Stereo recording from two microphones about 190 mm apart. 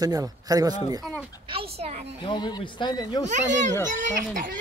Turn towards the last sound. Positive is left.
turn(degrees=-40)  # may be behind; listen again after turning